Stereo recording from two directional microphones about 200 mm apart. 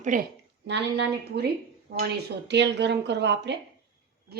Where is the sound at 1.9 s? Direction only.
50° right (ahead or behind).